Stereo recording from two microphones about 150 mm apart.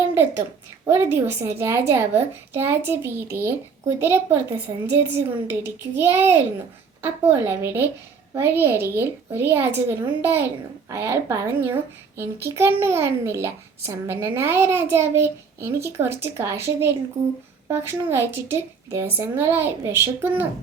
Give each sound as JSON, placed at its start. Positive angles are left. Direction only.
{"t": 0.1, "sound": "a child's voice", "side_deg": -15}